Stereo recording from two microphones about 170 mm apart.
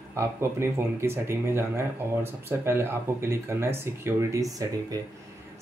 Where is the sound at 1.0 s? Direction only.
15° right (ahead or behind).